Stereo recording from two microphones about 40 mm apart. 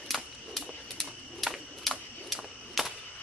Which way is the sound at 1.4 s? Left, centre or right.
Centre.